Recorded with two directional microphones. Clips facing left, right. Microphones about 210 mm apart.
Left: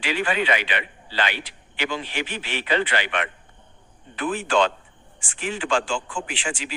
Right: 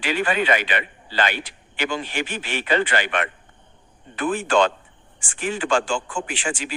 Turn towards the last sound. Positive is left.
turn(degrees=-45)  # may be behind; listen again after turning